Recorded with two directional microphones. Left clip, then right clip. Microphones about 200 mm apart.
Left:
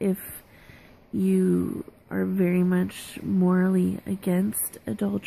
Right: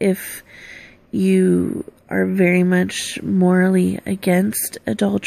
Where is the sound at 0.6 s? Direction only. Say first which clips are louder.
Right 13 dB; 40° left (ahead or behind).